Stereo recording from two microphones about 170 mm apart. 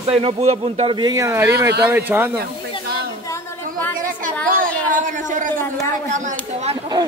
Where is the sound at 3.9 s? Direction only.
55° right (ahead or behind).